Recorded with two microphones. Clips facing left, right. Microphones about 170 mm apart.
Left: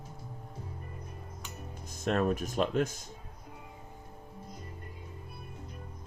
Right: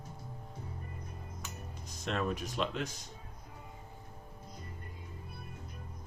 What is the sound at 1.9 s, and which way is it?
Speech, 50° left (ahead or behind).